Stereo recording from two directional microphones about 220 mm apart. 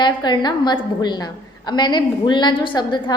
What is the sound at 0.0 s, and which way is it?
A woman's voice, 20° left (ahead or behind).